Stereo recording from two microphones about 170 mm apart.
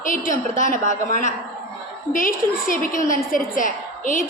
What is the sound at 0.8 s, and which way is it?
Speech, 50° right (ahead or behind).